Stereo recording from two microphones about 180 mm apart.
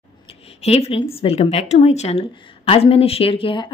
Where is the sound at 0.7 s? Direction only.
35° left (ahead or behind).